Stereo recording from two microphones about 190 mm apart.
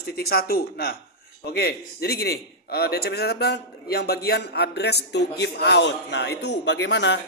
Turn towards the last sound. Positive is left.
turn(degrees=70)  # may be behind; listen again after turning